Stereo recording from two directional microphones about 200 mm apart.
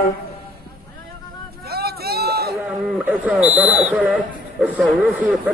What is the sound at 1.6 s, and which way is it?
Run, 50° right (ahead or behind).